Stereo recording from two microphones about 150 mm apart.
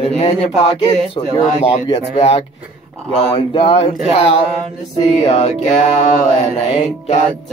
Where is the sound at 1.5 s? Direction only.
45° left (ahead or behind).